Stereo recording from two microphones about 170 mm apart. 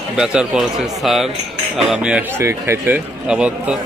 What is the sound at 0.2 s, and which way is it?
Speech, 5° right (ahead or behind).